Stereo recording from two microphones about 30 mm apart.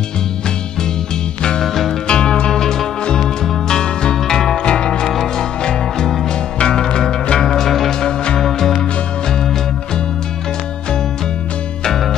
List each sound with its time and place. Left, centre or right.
2.0 s music: left
3.6 s music: left
4.6 s music: left
5.0 s music: centre
5.6 s music: left